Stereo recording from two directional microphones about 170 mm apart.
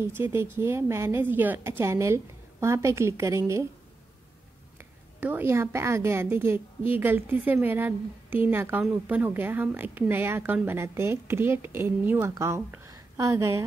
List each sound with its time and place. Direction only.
0.0 s a woman's voice: 15° right (ahead or behind)
4.7 s a woman's voice: 10° right (ahead or behind)